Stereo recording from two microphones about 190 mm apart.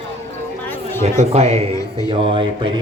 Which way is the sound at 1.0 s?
35° right (ahead or behind).